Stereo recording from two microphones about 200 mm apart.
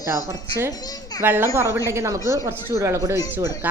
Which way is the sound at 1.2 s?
10° right (ahead or behind).